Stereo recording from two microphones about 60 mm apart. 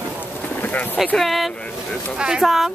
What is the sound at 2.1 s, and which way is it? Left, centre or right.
Speech, centre.